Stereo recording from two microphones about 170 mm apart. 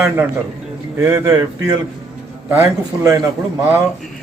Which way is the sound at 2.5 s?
15° right (ahead or behind).